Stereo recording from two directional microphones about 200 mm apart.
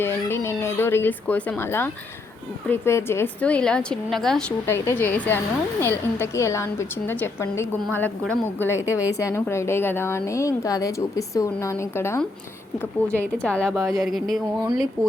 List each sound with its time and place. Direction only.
0.0 s a woman's voice: 10° left (ahead or behind)